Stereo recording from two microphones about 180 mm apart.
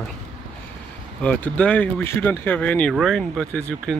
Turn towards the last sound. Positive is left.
turn(degrees=5)  # may be behind; listen again after turning